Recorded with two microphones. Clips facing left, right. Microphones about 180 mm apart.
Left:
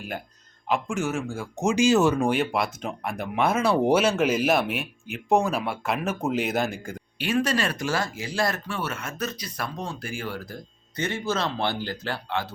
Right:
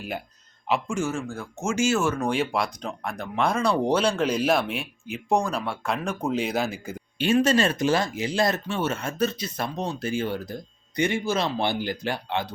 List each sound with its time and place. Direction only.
0.7 s speech: centre (ahead or behind)
2.3 s speech: centre (ahead or behind)
7.2 s speech: 25° right (ahead or behind)